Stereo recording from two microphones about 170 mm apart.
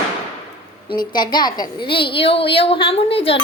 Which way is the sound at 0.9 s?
25° left (ahead or behind).